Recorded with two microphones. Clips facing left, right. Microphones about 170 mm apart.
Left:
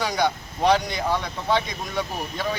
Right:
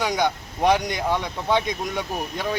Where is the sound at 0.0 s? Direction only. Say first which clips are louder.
Right 1 dB; 20° right (ahead or behind).